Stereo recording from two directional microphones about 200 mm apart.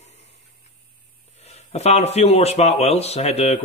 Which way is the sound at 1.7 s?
30° left (ahead or behind).